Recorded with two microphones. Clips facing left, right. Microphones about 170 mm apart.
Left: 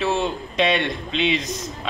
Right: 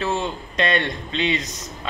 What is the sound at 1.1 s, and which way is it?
Speech, 90° left.